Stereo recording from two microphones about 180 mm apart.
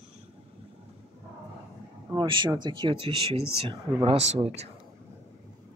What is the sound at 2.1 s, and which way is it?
Speech, 25° right (ahead or behind).